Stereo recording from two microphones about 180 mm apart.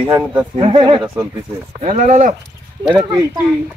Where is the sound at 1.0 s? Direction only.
15° right (ahead or behind).